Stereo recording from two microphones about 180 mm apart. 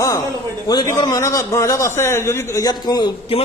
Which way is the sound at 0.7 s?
20° left (ahead or behind).